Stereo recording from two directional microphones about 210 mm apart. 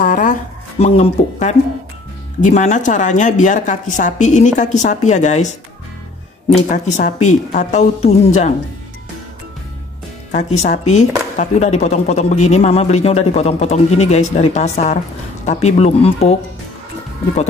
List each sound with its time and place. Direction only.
0.0 s music: 40° left (ahead or behind)
2.4 s speech: 35° left (ahead or behind)
6.7 s speech: 35° left (ahead or behind)
10.3 s speech: 35° left (ahead or behind)